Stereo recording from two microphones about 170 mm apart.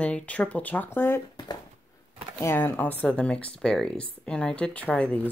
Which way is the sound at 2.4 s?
15° left (ahead or behind).